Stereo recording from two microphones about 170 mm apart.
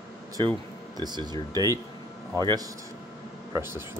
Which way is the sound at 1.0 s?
25° right (ahead or behind).